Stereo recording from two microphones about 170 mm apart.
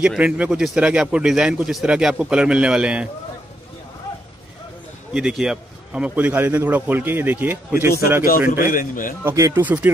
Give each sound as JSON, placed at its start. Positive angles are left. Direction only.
{"t": 0.0, "sound": "a man's voice", "side_deg": -5}
{"t": 5.1, "sound": "a man's voice", "side_deg": -5}
{"t": 8.2, "sound": "a man's voice", "side_deg": 60}
{"t": 9.2, "sound": "a man's voice", "side_deg": -15}